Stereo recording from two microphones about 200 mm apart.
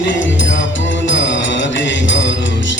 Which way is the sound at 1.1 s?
65° left (ahead or behind).